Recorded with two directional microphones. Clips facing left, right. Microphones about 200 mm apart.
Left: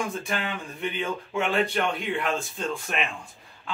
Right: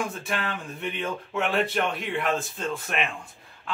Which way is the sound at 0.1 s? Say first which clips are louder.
Left 1 dB; centre (ahead or behind).